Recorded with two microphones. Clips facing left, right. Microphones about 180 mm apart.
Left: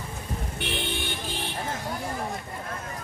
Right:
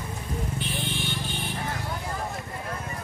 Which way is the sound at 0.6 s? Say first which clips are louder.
Left 1 dB; 70° left (ahead or behind).